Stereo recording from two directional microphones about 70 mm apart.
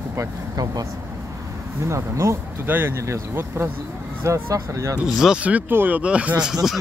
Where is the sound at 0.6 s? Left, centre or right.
Right.